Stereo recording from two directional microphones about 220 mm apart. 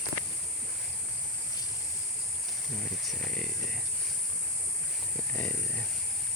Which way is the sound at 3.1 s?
5° left (ahead or behind).